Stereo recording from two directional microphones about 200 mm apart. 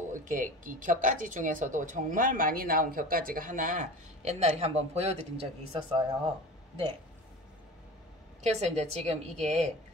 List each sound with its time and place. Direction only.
0.1 s speech: 40° right (ahead or behind)
8.4 s speech: 35° right (ahead or behind)